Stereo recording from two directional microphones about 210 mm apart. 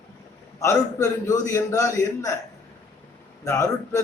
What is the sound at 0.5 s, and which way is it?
A man's voice, 15° left (ahead or behind).